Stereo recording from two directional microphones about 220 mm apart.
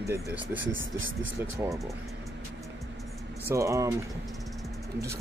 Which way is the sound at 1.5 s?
15° right (ahead or behind).